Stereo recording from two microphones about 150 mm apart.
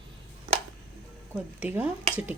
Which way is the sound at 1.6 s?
10° right (ahead or behind).